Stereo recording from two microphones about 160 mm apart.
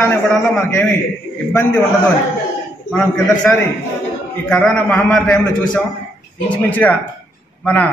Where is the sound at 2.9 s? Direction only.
5° left (ahead or behind).